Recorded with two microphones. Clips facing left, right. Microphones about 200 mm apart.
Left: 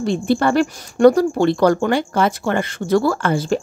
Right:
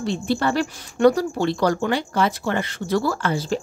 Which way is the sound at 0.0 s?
50° left (ahead or behind).